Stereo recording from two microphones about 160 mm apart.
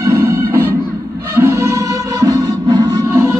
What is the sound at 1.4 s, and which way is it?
Music, 15° right (ahead or behind).